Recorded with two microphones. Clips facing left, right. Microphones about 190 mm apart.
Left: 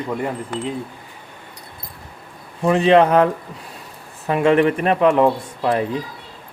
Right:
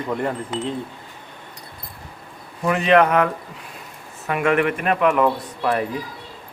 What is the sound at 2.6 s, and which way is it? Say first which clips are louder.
Speech: left 3 dB; 30° left (ahead or behind).